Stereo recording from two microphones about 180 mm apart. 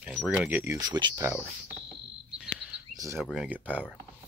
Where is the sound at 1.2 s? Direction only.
10° right (ahead or behind).